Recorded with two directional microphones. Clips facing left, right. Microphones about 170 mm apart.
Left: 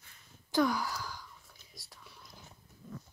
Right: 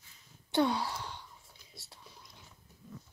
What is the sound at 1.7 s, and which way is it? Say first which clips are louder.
Whispering: right 1 dB; 30° right (ahead or behind).